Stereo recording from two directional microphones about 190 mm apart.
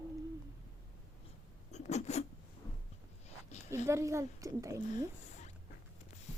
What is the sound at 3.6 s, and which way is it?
Speech, 15° right (ahead or behind).